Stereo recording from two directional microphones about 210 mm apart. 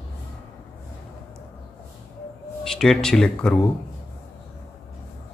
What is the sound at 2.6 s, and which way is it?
Speech, centre (ahead or behind).